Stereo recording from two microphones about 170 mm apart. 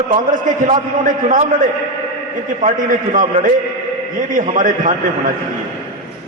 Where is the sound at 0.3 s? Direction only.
50° right (ahead or behind).